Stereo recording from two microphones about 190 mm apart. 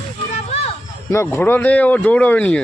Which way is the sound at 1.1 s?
15° left (ahead or behind).